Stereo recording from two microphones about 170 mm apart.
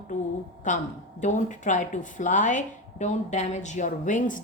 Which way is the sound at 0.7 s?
50° left (ahead or behind).